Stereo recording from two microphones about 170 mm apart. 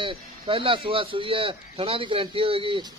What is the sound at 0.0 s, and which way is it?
A man's voice, 30° right (ahead or behind).